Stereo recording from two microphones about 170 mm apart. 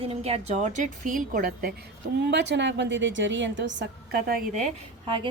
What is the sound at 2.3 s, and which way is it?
A woman's voice, 90° right.